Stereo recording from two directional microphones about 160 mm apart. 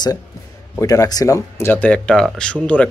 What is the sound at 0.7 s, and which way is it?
Speech, 20° left (ahead or behind).